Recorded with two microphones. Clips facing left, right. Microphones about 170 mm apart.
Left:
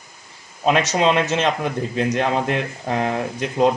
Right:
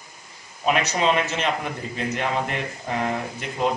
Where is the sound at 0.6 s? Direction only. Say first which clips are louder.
Left 4 dB; 90° left.